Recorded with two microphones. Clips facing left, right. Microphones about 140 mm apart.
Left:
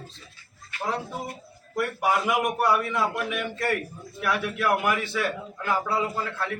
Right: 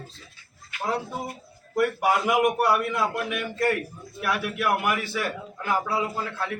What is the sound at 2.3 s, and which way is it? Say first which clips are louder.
A man's voice: right 2 dB; 5° right (ahead or behind).